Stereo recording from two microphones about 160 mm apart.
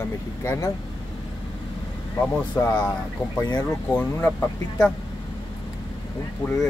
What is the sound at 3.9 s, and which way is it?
Speech, 15° left (ahead or behind).